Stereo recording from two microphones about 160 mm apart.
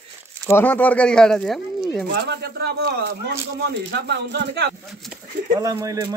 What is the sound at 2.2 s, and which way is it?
Speech, 90° right.